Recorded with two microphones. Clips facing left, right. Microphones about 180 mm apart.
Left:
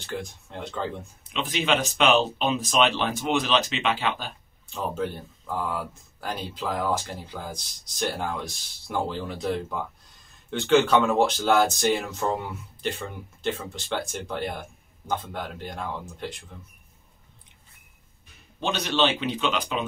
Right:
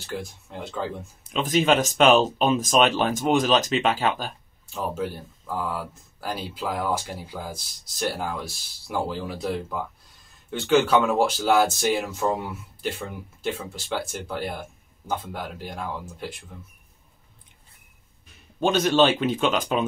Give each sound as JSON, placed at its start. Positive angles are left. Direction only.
{"t": 0.0, "sound": "speech", "side_deg": -5}
{"t": 1.2, "sound": "speech", "side_deg": -45}
{"t": 4.7, "sound": "speech", "side_deg": -5}
{"t": 18.6, "sound": "speech", "side_deg": -45}